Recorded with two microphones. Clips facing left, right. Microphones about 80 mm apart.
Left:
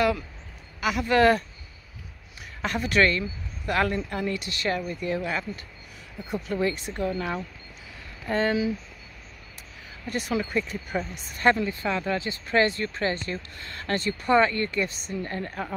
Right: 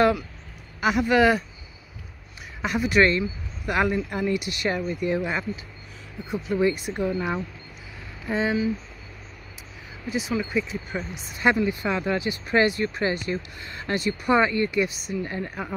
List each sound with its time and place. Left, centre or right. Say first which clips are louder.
0.7 s speech: right 2 dB; right
2.6 s speech: right 2 dB; centre
6.2 s speech: right 1 dB; centre
6.5 s speech: right 5 dB; centre
8.3 s speech: even; centre
10.0 s speech: right 1 dB; centre